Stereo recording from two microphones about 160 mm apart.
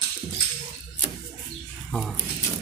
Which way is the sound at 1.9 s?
Centre (ahead or behind).